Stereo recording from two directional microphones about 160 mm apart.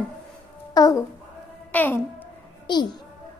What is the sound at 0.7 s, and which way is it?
A child's voice, 20° left (ahead or behind).